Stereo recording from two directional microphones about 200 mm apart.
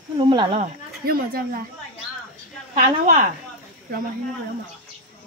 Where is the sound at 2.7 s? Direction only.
35° right (ahead or behind).